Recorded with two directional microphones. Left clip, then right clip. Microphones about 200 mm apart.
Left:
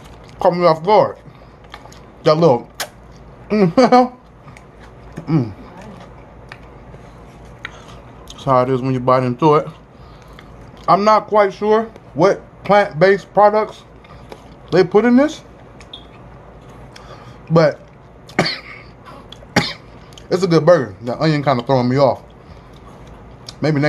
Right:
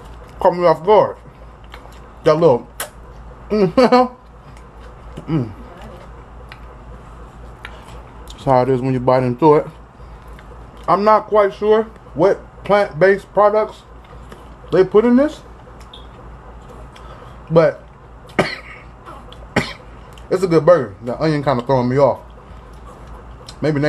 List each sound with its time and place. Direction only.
0.4 s speech: centre (ahead or behind)
2.2 s speech: centre (ahead or behind)
8.4 s speech: 20° right (ahead or behind)
10.9 s speech: centre (ahead or behind)
11.3 s speech: 10° left (ahead or behind)
17.5 s speech: 10° left (ahead or behind)
18.3 s cough: 10° left (ahead or behind)
20.2 s speech: 5° left (ahead or behind)
23.4 s a sound: 5° left (ahead or behind)